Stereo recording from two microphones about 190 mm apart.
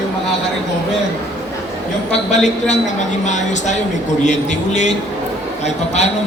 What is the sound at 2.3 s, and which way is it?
A man's voice, 35° left (ahead or behind).